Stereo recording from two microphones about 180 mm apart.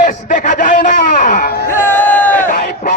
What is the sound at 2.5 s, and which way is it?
Crowd, 45° left (ahead or behind).